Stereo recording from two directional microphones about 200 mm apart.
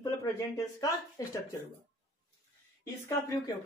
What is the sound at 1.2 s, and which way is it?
Speech, 15° left (ahead or behind).